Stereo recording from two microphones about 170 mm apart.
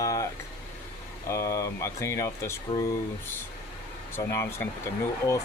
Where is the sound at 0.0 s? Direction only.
20° left (ahead or behind).